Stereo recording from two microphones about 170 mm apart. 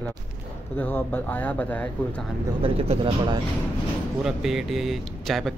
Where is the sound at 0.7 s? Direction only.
10° left (ahead or behind).